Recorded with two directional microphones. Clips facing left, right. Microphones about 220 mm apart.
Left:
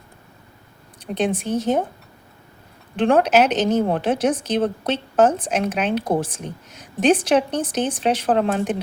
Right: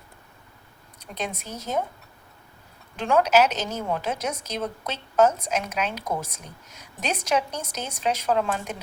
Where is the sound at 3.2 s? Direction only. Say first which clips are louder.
Left 4 dB; 30° left (ahead or behind).